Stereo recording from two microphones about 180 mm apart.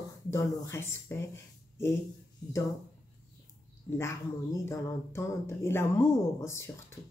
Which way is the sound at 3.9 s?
15° left (ahead or behind).